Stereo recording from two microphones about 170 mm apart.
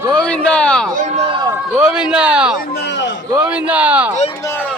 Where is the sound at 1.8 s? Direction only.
5° right (ahead or behind).